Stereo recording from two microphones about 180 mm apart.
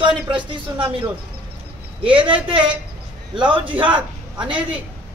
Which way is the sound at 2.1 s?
30° right (ahead or behind).